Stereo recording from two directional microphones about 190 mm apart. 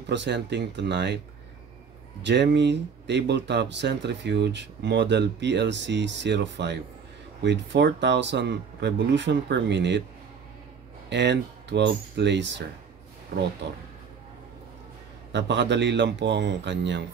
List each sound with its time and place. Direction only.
0.0 s speech: 65° right (ahead or behind)
2.2 s speech: 65° right (ahead or behind)
11.1 s speech: 65° right (ahead or behind)
13.3 s speech: 55° right (ahead or behind)
15.3 s speech: 65° right (ahead or behind)